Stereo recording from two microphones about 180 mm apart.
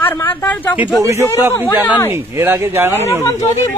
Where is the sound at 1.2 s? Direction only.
15° right (ahead or behind).